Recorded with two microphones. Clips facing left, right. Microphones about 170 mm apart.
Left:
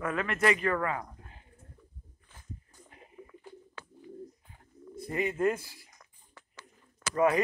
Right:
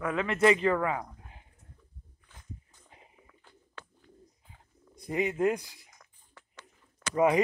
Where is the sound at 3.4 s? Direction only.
10° left (ahead or behind).